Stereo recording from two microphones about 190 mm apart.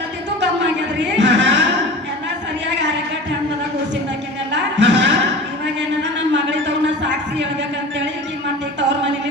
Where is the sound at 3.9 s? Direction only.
70° right (ahead or behind).